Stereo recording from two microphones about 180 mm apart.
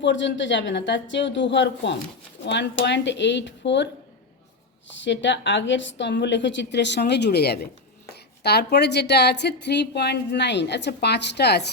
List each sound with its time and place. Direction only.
0.0 s a woman's voice: 80° left
4.9 s a woman's voice: 85° left; by 11.6 s 65° left (ahead or behind)